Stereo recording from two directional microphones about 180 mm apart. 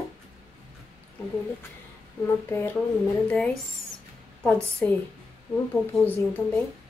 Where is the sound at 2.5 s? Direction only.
10° left (ahead or behind).